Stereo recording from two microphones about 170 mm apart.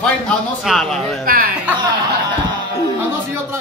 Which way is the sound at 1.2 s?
55° right (ahead or behind).